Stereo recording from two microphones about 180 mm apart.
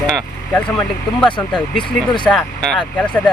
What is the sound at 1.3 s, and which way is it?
Speech, 25° left (ahead or behind).